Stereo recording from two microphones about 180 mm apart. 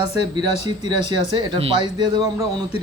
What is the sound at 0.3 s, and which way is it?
A man's voice, 25° right (ahead or behind).